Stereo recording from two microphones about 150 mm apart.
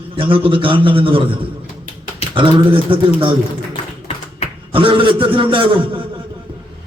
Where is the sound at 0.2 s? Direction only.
35° right (ahead or behind).